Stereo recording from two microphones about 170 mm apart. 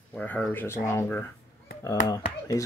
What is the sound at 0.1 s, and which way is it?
Speech, 10° left (ahead or behind).